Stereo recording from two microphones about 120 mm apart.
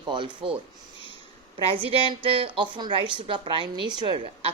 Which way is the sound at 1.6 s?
50° right (ahead or behind).